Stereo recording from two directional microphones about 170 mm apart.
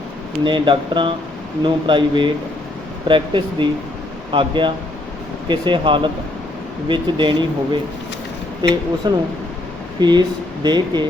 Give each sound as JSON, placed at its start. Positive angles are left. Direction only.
{"t": 0.4, "sound": "speech", "side_deg": -30}